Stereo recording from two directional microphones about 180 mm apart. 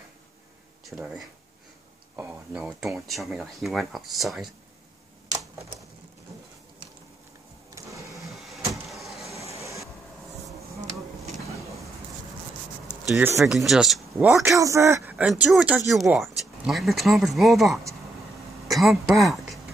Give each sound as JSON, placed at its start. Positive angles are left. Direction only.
{"t": 0.8, "sound": "speech", "side_deg": 0}
{"t": 7.7, "sound": "sewing machine", "side_deg": -15}
{"t": 8.3, "sound": "cupboard open or close", "side_deg": 0}
{"t": 9.6, "sound": "train", "side_deg": -15}
{"t": 13.1, "sound": "a man's voice", "side_deg": -10}
{"t": 13.4, "sound": "speech", "side_deg": 0}
{"t": 14.1, "sound": "a man's voice", "side_deg": -15}